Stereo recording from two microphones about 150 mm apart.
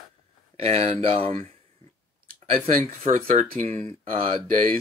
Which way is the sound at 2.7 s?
60° right (ahead or behind).